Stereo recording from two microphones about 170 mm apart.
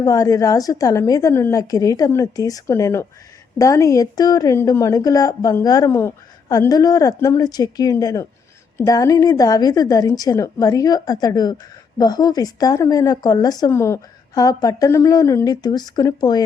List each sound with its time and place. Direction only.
0.0 s speech: 20° left (ahead or behind)